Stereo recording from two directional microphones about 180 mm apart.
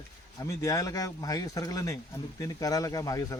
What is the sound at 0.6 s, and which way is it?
Speech, 20° left (ahead or behind).